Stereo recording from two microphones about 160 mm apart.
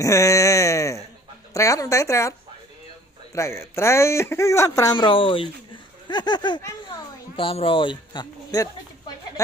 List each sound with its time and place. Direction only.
0.0 s a woman's voice: 20° left (ahead or behind)
3.3 s a woman's voice: 20° left (ahead or behind)